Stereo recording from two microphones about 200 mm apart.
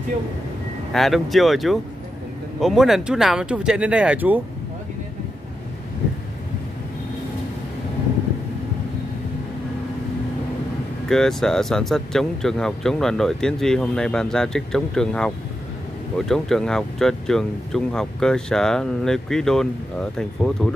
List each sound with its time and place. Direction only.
0.9 s speech: centre (ahead or behind)
11.1 s speech: centre (ahead or behind)